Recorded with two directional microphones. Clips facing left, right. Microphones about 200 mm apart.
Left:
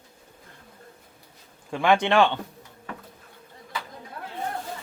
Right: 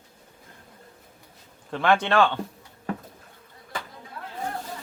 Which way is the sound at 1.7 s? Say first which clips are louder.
Left 1 dB; 10° left (ahead or behind).